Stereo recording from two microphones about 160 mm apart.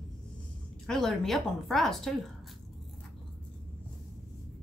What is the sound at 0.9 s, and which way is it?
A woman's voice, centre (ahead or behind).